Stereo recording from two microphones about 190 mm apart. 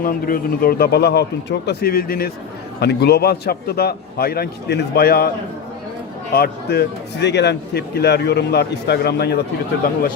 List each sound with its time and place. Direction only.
0.0 s a man's voice: 50° left (ahead or behind)
6.3 s a man's voice: 55° left (ahead or behind)